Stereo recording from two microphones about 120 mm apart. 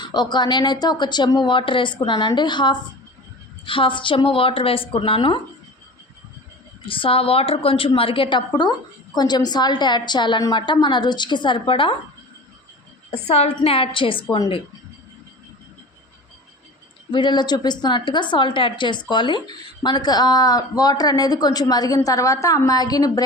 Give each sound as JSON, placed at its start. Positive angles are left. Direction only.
{"t": 0.0, "sound": "a woman's voice", "side_deg": 40}
{"t": 6.8, "sound": "a woman's voice", "side_deg": 45}
{"t": 13.1, "sound": "a woman's voice", "side_deg": 60}
{"t": 17.1, "sound": "speech", "side_deg": 40}